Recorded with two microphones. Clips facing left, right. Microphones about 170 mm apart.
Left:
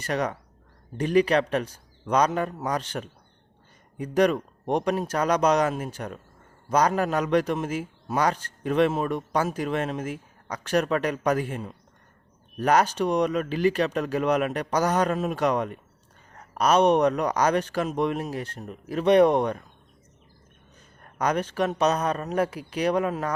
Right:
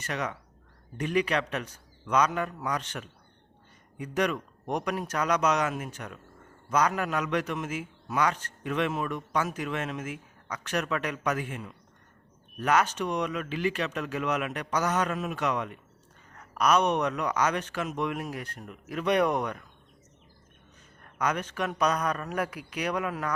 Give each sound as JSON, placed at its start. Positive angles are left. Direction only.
{"t": 0.0, "sound": "a man's voice", "side_deg": 35}
{"t": 21.0, "sound": "a man's voice", "side_deg": 35}